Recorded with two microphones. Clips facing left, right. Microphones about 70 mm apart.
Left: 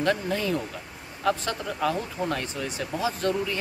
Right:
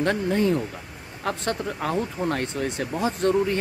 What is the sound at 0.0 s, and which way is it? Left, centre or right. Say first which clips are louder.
Speech: right 3 dB; right.